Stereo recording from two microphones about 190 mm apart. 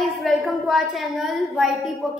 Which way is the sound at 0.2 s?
Centre (ahead or behind).